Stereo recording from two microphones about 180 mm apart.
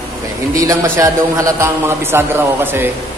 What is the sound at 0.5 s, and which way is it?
A man's voice, 20° right (ahead or behind).